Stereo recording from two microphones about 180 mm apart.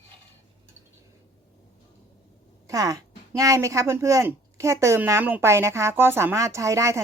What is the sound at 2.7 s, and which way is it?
Speech, 20° right (ahead or behind).